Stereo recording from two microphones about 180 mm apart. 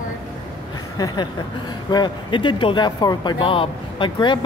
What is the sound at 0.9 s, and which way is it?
Speech, 25° left (ahead or behind).